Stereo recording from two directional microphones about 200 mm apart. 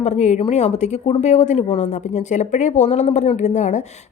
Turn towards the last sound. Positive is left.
turn(degrees=35)  # may be behind; listen again after turning